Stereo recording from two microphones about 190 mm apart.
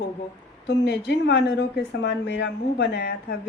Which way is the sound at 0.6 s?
65° left (ahead or behind).